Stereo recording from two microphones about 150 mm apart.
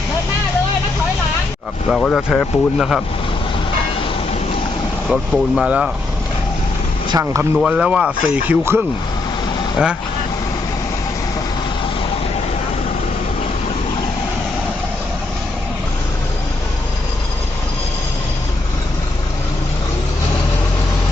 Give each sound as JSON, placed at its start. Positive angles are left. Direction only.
{"t": 1.9, "sound": "speech", "side_deg": 5}
{"t": 5.0, "sound": "speech", "side_deg": 0}
{"t": 7.1, "sound": "speech", "side_deg": -20}
{"t": 7.5, "sound": "speech", "side_deg": -5}